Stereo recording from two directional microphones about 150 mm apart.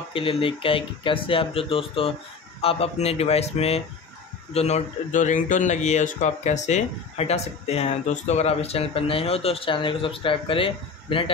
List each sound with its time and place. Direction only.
0.1 s speech: 35° left (ahead or behind)